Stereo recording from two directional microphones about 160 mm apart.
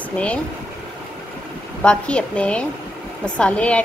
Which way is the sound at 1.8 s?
5° left (ahead or behind).